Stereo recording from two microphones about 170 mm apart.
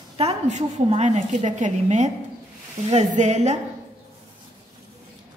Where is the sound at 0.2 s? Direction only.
40° right (ahead or behind).